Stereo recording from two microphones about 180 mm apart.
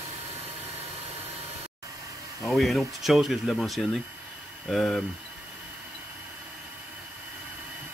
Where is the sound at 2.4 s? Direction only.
Centre (ahead or behind).